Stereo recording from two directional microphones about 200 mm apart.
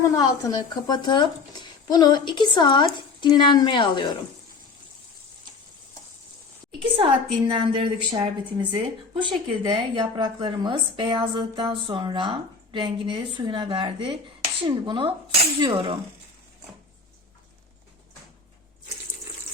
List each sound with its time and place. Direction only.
0.0 s speech: 15° left (ahead or behind)
6.9 s a woman's voice: 25° right (ahead or behind)